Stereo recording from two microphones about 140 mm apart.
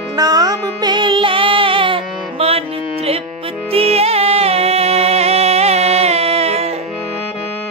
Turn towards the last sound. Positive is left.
turn(degrees=-45)  # may be behind; listen again after turning